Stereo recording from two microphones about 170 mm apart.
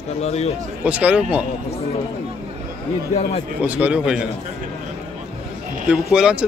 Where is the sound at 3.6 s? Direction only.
10° right (ahead or behind).